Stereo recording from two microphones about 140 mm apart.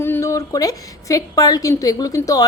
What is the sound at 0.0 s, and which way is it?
A woman's voice, 20° left (ahead or behind).